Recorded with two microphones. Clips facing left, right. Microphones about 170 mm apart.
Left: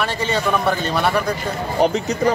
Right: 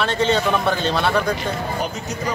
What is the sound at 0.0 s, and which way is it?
Speech, 10° left (ahead or behind).